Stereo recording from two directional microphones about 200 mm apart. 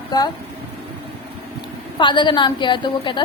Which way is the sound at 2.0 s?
25° left (ahead or behind).